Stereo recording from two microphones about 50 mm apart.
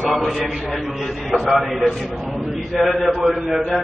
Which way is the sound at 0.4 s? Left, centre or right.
Centre.